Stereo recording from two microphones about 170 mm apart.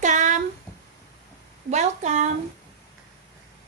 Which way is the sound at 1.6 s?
45° right (ahead or behind).